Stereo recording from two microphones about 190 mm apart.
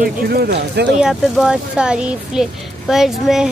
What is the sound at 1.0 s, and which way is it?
Speech, centre (ahead or behind).